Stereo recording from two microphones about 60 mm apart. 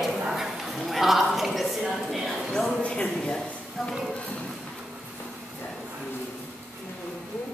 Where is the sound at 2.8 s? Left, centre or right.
Centre.